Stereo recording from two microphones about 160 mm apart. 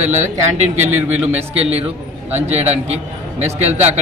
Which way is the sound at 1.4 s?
40° right (ahead or behind).